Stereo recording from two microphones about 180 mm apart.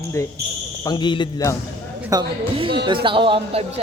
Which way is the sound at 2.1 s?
25° right (ahead or behind).